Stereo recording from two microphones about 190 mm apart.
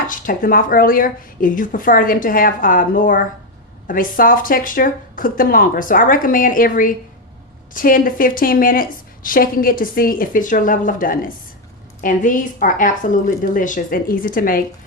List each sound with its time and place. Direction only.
0.1 s a woman's voice: 45° left (ahead or behind)